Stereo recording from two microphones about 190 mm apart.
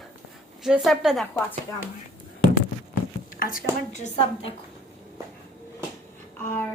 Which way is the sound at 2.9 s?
45° left (ahead or behind).